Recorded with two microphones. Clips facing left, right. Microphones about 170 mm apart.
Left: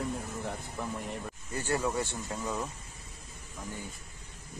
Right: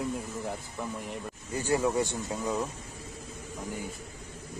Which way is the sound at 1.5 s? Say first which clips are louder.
Right 4 dB; 15° right (ahead or behind).